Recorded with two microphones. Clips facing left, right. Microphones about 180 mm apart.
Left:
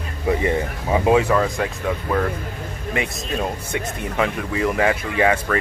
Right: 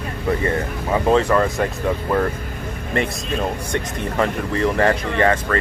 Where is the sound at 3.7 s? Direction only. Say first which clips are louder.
Right 2 dB; 5° left (ahead or behind).